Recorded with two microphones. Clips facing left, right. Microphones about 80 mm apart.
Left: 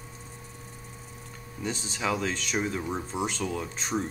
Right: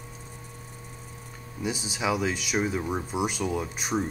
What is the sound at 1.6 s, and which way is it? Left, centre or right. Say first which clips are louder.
Speech: right 2 dB; centre.